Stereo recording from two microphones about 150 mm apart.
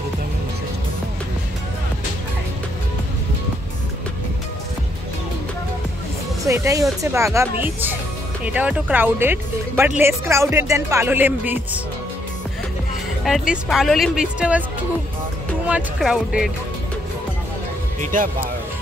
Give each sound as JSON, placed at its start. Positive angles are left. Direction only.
{"t": 6.4, "sound": "speech", "side_deg": -20}
{"t": 13.2, "sound": "speech", "side_deg": 0}
{"t": 15.6, "sound": "speech", "side_deg": -5}
{"t": 18.1, "sound": "speech", "side_deg": -65}